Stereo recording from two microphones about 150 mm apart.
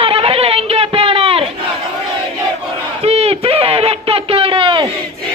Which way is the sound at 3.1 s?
40° right (ahead or behind).